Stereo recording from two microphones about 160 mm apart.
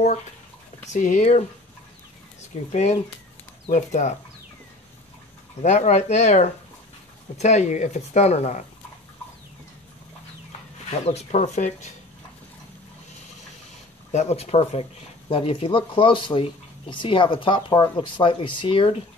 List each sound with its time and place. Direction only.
0.9 s speech: 50° left (ahead or behind)
2.7 s speech: 45° left (ahead or behind)
5.6 s speech: 45° left (ahead or behind)
11.1 s speech: 45° left (ahead or behind)
14.1 s speech: 40° left (ahead or behind)